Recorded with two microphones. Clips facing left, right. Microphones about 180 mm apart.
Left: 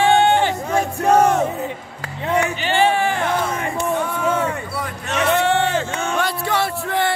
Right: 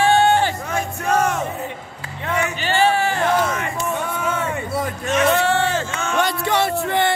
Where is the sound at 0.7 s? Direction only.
35° left (ahead or behind).